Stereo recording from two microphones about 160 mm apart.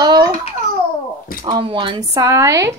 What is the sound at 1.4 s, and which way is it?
A woman's voice, 30° right (ahead or behind).